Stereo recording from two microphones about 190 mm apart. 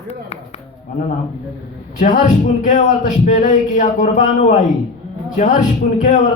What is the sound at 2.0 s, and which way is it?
A man's voice, 40° left (ahead or behind).